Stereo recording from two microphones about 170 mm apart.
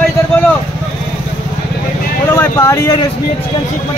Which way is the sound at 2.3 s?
15° left (ahead or behind).